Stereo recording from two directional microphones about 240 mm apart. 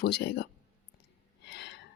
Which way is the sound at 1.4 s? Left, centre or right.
Left.